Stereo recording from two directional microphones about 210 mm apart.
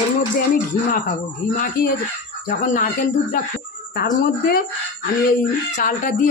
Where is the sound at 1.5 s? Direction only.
40° left (ahead or behind).